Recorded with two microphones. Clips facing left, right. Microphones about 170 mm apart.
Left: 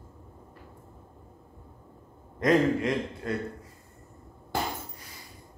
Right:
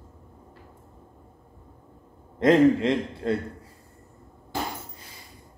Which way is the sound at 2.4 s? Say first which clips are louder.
Right 5 dB; 25° right (ahead or behind).